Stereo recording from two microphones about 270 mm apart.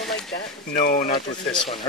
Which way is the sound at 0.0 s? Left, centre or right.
Centre.